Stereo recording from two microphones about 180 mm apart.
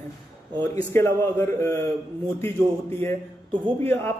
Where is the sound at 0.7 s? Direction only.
15° left (ahead or behind).